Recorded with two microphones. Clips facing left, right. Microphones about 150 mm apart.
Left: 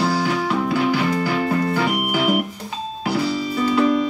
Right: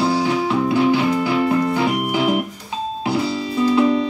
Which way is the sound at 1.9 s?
25° right (ahead or behind).